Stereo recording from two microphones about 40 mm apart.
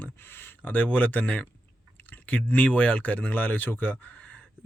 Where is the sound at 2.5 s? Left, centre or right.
Left.